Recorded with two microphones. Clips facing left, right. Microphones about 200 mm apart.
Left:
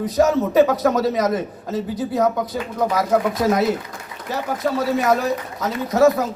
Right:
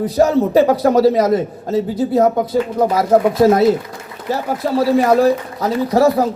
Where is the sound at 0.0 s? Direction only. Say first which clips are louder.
Right 4 dB; 30° right (ahead or behind).